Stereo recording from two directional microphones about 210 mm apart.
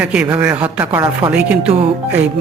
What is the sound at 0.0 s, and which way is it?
Speech, 5° right (ahead or behind).